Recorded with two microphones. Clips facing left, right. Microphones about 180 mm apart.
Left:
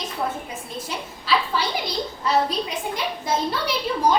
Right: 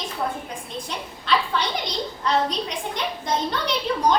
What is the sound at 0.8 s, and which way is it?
A woman's voice, 5° left (ahead or behind).